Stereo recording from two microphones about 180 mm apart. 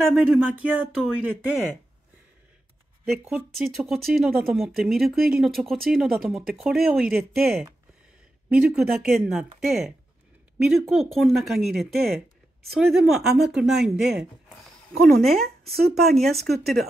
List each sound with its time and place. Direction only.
0.0 s speech: 5° right (ahead or behind)
3.1 s speech: centre (ahead or behind)
15.4 s speech: 60° right (ahead or behind)
15.9 s speech: centre (ahead or behind)